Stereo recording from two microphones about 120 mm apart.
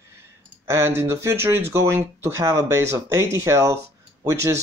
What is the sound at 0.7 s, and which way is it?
Speech, 20° right (ahead or behind).